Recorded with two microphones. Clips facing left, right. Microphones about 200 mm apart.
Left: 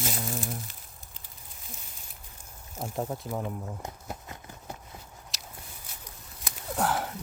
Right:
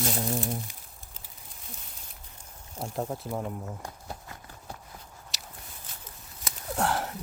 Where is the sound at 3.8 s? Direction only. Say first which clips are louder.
Left 1 dB; 20° left (ahead or behind).